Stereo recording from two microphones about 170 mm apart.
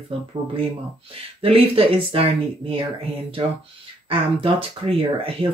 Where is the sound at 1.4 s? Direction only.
35° right (ahead or behind).